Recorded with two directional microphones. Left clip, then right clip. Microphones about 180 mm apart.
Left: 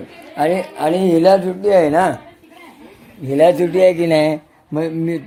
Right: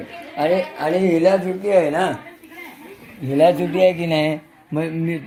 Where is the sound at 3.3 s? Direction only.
35° left (ahead or behind).